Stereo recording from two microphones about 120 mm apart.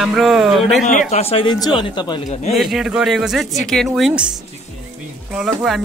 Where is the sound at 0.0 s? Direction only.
Centre (ahead or behind).